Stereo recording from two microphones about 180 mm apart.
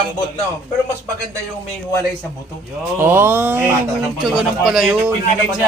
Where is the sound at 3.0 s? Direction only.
15° right (ahead or behind).